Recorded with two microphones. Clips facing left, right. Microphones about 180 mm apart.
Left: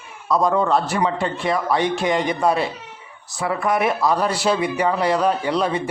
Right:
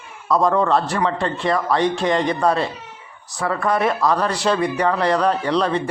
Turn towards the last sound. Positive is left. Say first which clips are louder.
# right 1 dB
turn(degrees=5)  # may be behind; listen again after turning